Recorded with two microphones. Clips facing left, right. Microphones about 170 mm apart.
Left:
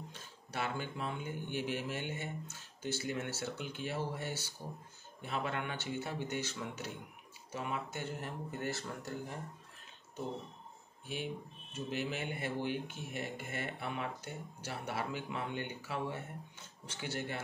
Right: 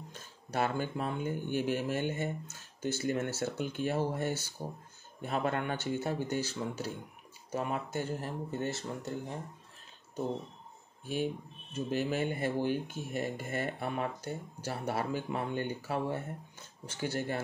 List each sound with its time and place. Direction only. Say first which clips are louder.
0.1 s speech: right 7 dB; 45° right (ahead or behind); by 9.4 s 25° right (ahead or behind)
11.7 s speech: right 6 dB; 40° right (ahead or behind)